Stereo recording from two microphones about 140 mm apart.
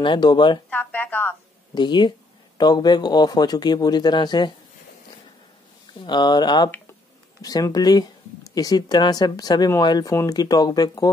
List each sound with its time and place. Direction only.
0.0 s speech: 30° left (ahead or behind)
0.7 s music: 10° left (ahead or behind)
1.8 s speech: 30° left (ahead or behind)
5.9 s speech: 30° left (ahead or behind)